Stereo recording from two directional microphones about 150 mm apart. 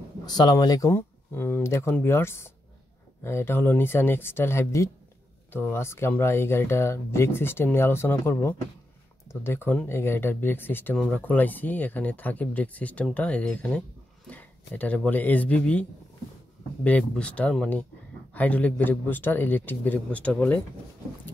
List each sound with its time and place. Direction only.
0.3 s speech: 25° left (ahead or behind); by 20.6 s 10° left (ahead or behind)